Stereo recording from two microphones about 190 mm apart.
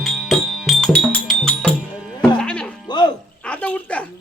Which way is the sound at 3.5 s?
5° left (ahead or behind).